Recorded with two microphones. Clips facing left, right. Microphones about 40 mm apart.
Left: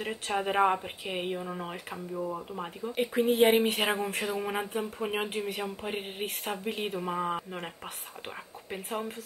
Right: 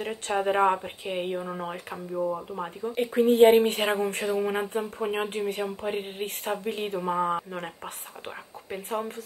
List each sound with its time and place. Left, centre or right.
0.0 s speech: centre
1.4 s speech: centre
2.1 s speech: centre
2.9 s speech: centre